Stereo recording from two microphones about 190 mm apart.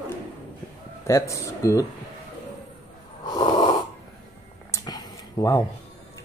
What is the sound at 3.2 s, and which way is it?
Snort, 20° left (ahead or behind).